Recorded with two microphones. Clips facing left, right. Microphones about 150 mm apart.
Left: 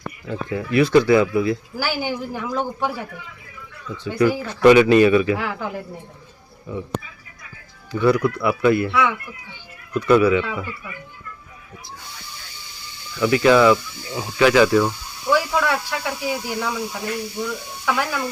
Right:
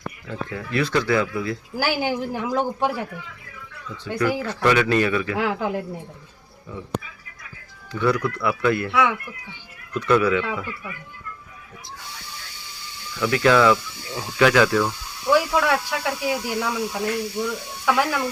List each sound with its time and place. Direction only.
0.3 s speech: 15° left (ahead or behind)
1.7 s speech: 15° right (ahead or behind)
4.4 s speech: 15° left (ahead or behind)
5.4 s speech: 15° right (ahead or behind)
7.9 s speech: 5° left (ahead or behind)
8.9 s speech: 10° right (ahead or behind)
9.9 s speech: 5° left (ahead or behind)
13.1 s speech: 5° left (ahead or behind)
15.3 s speech: 10° right (ahead or behind)